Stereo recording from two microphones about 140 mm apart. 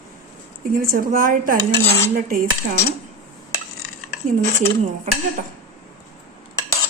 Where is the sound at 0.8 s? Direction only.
90° right.